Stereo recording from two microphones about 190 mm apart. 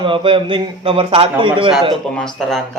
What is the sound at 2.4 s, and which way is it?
Speech, centre (ahead or behind).